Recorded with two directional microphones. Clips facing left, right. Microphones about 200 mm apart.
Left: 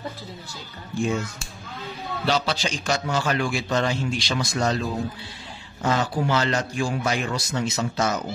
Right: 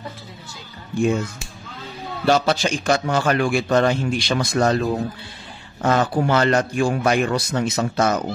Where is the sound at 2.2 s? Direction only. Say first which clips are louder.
Right 6 dB; 50° right (ahead or behind).